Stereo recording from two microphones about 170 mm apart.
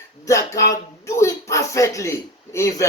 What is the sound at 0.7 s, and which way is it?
Speech, 15° left (ahead or behind).